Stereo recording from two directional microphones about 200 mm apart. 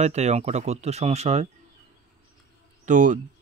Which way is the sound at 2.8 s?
40° right (ahead or behind).